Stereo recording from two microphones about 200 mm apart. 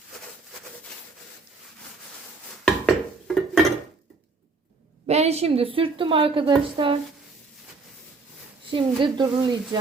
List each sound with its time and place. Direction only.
2.6 s dishes: centre (ahead or behind)
5.0 s a woman's voice: 30° right (ahead or behind)
8.7 s a woman's voice: 25° right (ahead or behind)